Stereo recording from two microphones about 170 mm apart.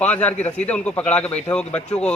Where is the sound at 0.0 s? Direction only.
10° left (ahead or behind).